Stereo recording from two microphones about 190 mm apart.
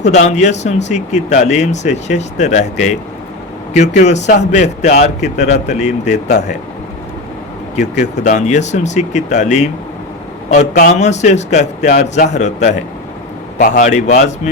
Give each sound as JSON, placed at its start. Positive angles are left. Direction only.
{"t": 0.0, "sound": "speech", "side_deg": 40}
{"t": 7.8, "sound": "speech", "side_deg": 40}